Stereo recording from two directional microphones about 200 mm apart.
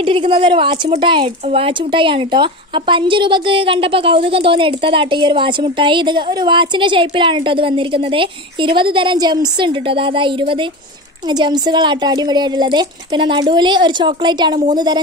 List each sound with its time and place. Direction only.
0.0 s speech: 25° right (ahead or behind)